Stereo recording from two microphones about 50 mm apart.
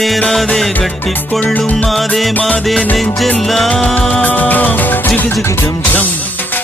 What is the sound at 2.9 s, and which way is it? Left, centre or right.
Music, centre.